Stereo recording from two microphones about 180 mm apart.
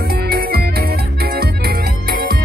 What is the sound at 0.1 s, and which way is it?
Music, 60° right (ahead or behind).